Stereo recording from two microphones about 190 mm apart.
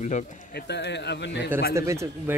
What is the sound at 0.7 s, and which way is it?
Speech, 65° left (ahead or behind).